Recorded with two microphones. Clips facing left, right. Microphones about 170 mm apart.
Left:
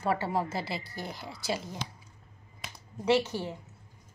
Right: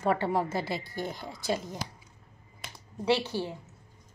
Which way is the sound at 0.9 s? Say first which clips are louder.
Right 4 dB; 5° left (ahead or behind).